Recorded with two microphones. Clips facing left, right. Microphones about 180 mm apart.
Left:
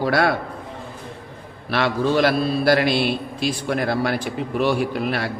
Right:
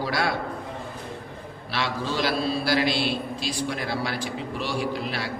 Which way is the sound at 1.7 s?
55° left (ahead or behind).